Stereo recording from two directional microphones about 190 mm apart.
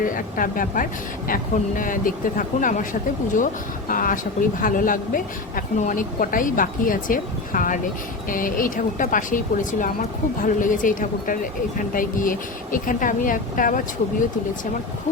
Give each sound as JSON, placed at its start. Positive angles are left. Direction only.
{"t": 0.0, "sound": "speech", "side_deg": 45}